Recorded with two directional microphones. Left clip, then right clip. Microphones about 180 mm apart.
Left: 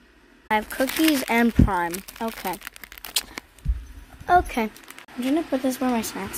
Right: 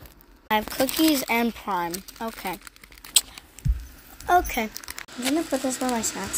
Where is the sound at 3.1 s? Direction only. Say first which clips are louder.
Right 4 dB; 10° left (ahead or behind).